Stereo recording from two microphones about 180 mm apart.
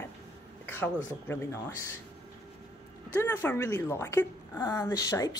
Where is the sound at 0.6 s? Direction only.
10° left (ahead or behind).